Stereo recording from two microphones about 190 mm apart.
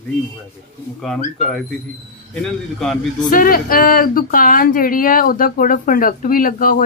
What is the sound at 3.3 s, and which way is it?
Speech, 45° left (ahead or behind).